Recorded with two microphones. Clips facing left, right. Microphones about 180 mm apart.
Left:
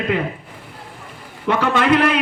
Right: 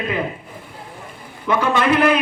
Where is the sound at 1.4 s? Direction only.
65° left (ahead or behind).